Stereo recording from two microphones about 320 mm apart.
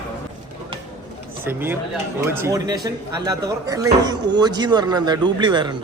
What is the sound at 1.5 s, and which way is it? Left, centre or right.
Speech, centre.